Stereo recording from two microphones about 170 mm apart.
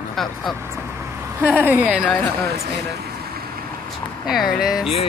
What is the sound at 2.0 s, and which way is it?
Speech, 5° left (ahead or behind).